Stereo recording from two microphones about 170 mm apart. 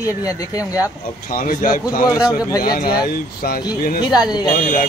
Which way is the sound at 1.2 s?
55° left (ahead or behind).